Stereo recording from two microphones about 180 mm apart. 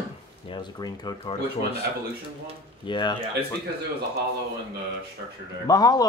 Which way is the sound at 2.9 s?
25° left (ahead or behind).